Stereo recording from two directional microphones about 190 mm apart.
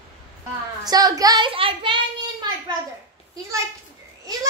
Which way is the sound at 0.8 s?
20° right (ahead or behind).